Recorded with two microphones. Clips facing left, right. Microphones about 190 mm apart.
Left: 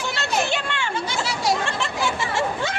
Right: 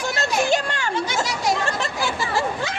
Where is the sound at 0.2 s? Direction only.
40° right (ahead or behind).